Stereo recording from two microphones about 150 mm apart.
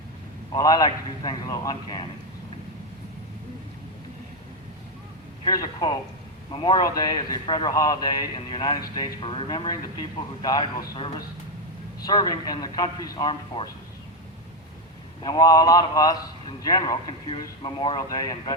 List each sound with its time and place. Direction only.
0.5 s a man's voice: 25° left (ahead or behind)
5.5 s a man's voice: 25° left (ahead or behind)
15.2 s a man's voice: 25° left (ahead or behind)